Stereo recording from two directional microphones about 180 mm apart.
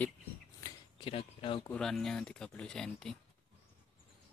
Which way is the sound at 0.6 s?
30° left (ahead or behind).